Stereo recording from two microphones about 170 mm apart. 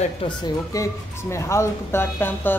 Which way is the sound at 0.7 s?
20° left (ahead or behind).